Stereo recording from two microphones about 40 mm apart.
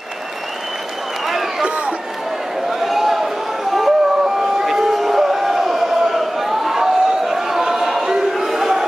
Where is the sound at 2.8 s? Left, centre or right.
Centre.